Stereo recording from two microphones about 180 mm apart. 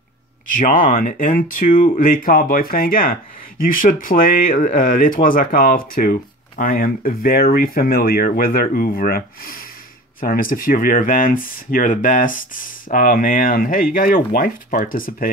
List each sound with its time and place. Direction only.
0.5 s speech: 50° left (ahead or behind)